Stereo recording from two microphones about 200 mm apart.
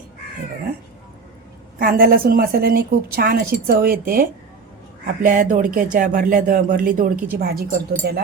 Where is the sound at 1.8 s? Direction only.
45° right (ahead or behind).